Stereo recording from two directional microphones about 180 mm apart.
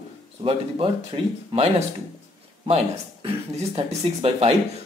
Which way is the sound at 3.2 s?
30° right (ahead or behind).